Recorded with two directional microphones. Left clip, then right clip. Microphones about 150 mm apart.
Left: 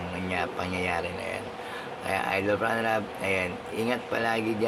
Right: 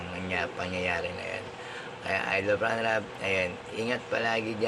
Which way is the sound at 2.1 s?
25° left (ahead or behind).